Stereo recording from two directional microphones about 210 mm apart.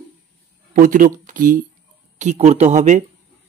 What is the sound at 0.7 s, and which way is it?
A man's voice, 40° right (ahead or behind).